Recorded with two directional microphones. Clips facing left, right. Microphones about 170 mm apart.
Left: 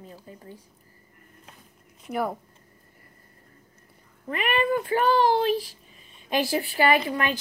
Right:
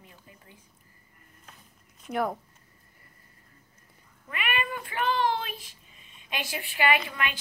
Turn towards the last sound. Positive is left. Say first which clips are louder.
# left 5 dB
turn(degrees=40)  # may be behind; listen again after turning